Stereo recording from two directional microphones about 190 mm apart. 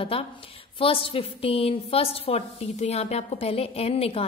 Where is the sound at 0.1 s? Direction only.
30° left (ahead or behind).